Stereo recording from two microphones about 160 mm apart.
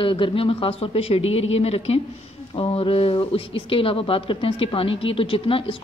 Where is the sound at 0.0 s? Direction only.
30° left (ahead or behind).